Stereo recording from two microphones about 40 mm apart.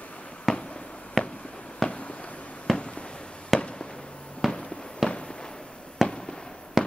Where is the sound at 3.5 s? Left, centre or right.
Centre.